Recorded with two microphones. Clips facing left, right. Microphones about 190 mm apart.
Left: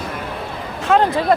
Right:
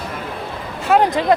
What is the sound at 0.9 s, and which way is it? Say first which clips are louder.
Speech: right 1 dB; 5° right (ahead or behind).